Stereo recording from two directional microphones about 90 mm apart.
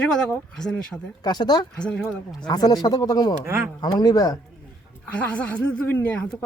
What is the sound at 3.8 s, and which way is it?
Speech, 50° left (ahead or behind).